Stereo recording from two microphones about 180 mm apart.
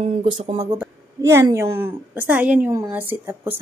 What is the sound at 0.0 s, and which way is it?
Speech, 35° right (ahead or behind).